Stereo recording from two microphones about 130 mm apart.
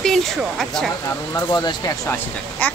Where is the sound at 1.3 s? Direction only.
25° left (ahead or behind).